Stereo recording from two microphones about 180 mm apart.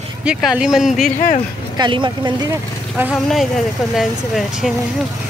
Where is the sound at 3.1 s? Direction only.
Centre (ahead or behind).